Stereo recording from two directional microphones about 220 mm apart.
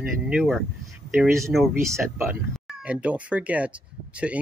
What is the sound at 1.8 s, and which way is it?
Speech, 10° right (ahead or behind).